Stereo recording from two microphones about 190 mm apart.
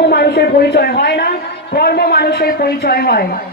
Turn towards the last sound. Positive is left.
turn(degrees=55)  # may be behind; listen again after turning